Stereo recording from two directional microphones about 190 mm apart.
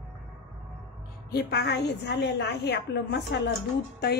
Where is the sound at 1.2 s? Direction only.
55° left (ahead or behind).